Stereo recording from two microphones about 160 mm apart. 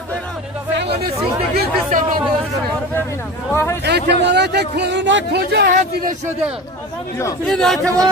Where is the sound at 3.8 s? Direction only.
90° right.